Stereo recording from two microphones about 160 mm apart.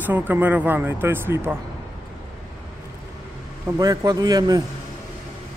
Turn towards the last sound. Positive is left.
turn(degrees=-25)  # may be behind; listen again after turning